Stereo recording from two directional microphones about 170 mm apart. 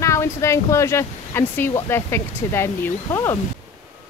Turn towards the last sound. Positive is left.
turn(degrees=15)  # may be behind; listen again after turning